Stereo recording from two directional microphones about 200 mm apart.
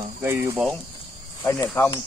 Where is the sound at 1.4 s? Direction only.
15° left (ahead or behind).